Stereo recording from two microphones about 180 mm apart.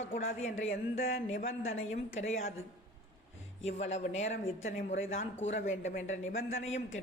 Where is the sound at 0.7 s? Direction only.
55° left (ahead or behind).